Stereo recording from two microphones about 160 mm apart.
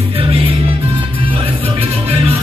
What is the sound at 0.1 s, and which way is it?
Music, 35° right (ahead or behind).